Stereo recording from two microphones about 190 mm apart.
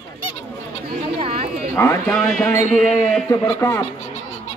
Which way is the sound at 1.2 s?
30° right (ahead or behind).